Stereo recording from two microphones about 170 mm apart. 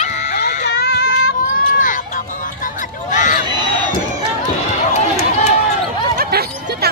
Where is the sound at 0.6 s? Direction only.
65° left (ahead or behind).